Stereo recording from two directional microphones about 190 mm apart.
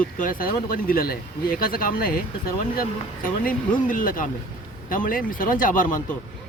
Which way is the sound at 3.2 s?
45° left (ahead or behind).